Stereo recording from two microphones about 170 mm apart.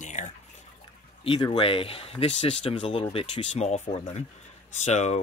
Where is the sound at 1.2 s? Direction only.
30° left (ahead or behind).